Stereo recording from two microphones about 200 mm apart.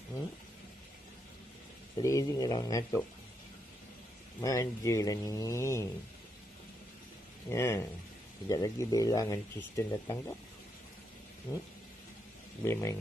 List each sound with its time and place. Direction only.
2.0 s speech: 15° left (ahead or behind)
4.4 s speech: 15° left (ahead or behind)
7.4 s speech: 15° left (ahead or behind)
11.5 s speech: 10° left (ahead or behind)
12.6 s speech: 15° left (ahead or behind)